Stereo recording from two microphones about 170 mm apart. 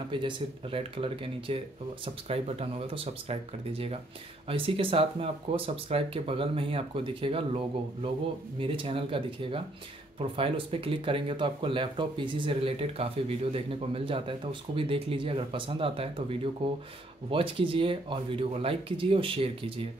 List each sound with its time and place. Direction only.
0.1 s speech: 30° right (ahead or behind)